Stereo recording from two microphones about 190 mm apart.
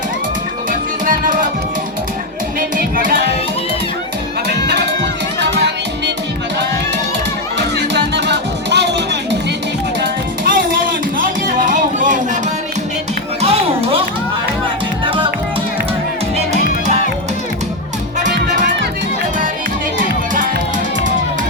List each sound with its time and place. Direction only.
0.7 s music: 45° right (ahead or behind)
2.6 s music: 45° right (ahead or behind)
4.4 s music: 60° right (ahead or behind)
7.8 s music: 65° right (ahead or behind)
10.0 s music: 50° right (ahead or behind)
13.4 s music: 30° right (ahead or behind)
15.0 s music: 25° right (ahead or behind)
18.3 s music: 65° right (ahead or behind)
20.0 s music: 45° right (ahead or behind)